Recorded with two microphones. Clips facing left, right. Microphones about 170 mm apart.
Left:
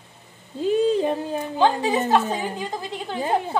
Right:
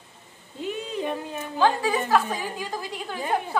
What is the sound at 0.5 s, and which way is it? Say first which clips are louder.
Child singing: left 11 dB; 35° left (ahead or behind).